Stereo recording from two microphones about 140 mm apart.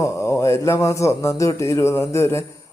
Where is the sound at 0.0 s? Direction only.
20° left (ahead or behind).